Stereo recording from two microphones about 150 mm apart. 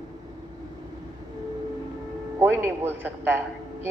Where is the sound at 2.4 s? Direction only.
15° right (ahead or behind).